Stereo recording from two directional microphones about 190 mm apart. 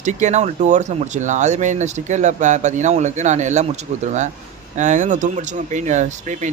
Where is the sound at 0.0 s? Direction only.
40° right (ahead or behind).